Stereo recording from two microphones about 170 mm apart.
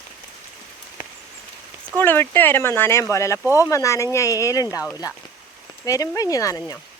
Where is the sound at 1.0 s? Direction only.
55° left (ahead or behind).